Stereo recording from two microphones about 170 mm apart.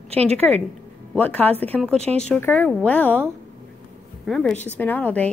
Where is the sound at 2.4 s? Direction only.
10° left (ahead or behind).